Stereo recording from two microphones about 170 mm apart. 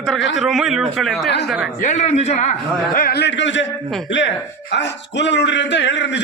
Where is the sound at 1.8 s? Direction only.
45° left (ahead or behind).